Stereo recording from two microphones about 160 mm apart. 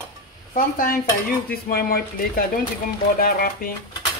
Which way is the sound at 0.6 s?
60° left (ahead or behind).